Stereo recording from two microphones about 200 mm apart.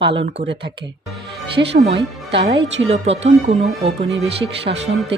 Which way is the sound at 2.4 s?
60° right (ahead or behind).